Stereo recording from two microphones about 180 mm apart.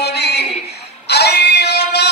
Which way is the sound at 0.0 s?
65° left (ahead or behind).